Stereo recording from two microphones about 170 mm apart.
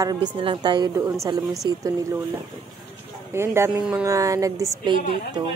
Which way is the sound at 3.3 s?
15° right (ahead or behind).